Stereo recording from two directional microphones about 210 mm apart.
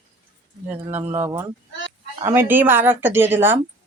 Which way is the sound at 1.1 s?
15° right (ahead or behind).